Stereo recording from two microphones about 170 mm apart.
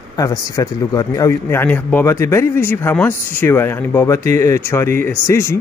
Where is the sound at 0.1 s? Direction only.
20° left (ahead or behind).